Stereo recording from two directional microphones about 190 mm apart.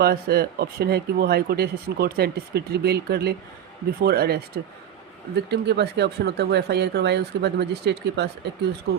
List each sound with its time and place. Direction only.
0.0 s speech: 55° right (ahead or behind)